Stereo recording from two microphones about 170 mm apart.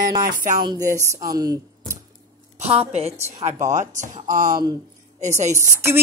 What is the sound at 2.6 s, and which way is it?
A woman's voice, 35° right (ahead or behind).